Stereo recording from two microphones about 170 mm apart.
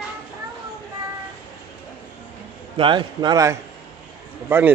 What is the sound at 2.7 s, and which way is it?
Speech, 30° right (ahead or behind).